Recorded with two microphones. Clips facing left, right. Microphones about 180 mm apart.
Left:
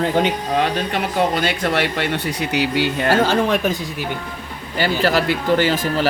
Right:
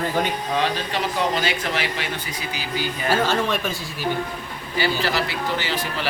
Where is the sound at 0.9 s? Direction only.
55° left (ahead or behind); by 3.1 s 75° left (ahead or behind).